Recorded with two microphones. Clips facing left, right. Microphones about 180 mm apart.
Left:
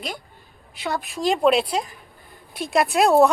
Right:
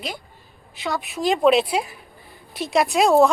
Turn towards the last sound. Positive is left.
turn(degrees=5)  # may be behind; listen again after turning